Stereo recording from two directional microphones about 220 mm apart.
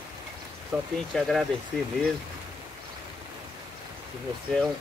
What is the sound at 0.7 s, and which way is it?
Speech, centre (ahead or behind).